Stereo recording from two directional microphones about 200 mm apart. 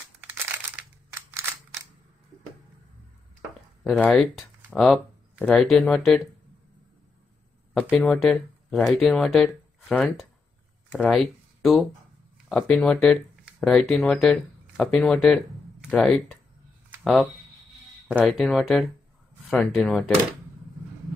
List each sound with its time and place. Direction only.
1.3 s a sound: 15° right (ahead or behind)
3.8 s speech: 5° left (ahead or behind)
7.9 s speech: centre (ahead or behind)